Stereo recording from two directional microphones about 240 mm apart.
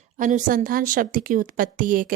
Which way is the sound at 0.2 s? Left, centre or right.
Right.